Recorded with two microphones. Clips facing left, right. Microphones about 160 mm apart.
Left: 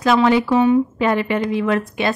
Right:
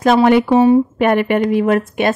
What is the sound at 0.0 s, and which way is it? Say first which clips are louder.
Speech: right 4 dB; 50° right (ahead or behind).